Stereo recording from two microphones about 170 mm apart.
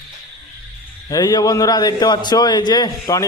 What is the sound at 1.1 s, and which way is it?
A man's voice, 20° left (ahead or behind).